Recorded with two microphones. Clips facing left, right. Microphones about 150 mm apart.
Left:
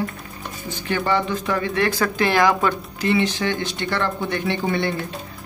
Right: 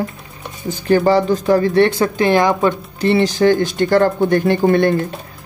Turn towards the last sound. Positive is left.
turn(degrees=-50)  # may be behind; listen again after turning